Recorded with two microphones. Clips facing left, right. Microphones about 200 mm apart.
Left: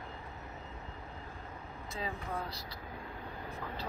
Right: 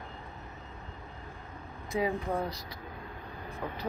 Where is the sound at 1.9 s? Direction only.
20° right (ahead or behind).